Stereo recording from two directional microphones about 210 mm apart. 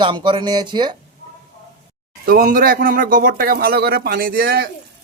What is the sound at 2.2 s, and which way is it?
Speech, 40° right (ahead or behind).